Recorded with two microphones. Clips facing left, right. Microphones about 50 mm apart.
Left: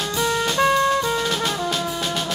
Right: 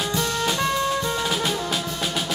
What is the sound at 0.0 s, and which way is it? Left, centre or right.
Music, centre.